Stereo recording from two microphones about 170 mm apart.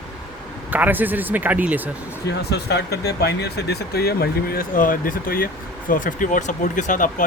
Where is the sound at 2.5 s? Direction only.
75° left (ahead or behind); by 7.1 s 50° left (ahead or behind).